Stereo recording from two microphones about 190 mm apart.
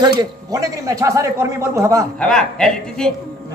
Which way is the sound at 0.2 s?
20° right (ahead or behind).